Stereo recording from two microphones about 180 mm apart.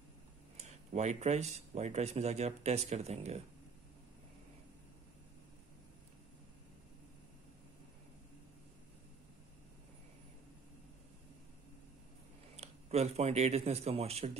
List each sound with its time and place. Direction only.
0.7 s speech: 40° right (ahead or behind)
12.5 s speech: 35° right (ahead or behind)